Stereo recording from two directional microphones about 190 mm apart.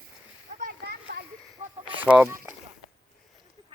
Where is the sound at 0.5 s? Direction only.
50° right (ahead or behind).